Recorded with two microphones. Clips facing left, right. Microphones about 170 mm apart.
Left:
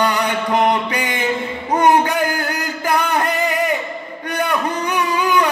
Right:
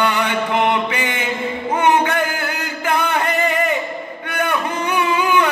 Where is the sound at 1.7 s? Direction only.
40° left (ahead or behind).